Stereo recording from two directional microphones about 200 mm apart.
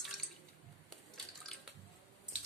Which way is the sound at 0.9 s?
5° left (ahead or behind).